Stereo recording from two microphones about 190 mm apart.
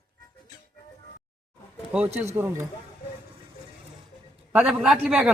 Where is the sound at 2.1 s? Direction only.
10° right (ahead or behind).